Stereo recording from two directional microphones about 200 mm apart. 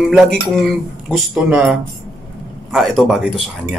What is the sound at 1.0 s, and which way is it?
Speech, centre (ahead or behind).